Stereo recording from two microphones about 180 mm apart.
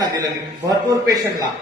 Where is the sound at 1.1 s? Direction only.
20° right (ahead or behind).